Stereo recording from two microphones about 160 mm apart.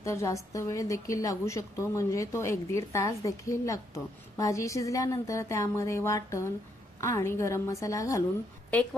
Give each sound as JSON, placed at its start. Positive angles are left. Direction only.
{"t": 0.0, "sound": "a woman's voice", "side_deg": 20}